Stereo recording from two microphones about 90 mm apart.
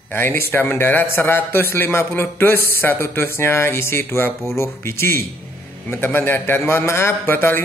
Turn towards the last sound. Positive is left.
turn(degrees=25)  # may be behind; listen again after turning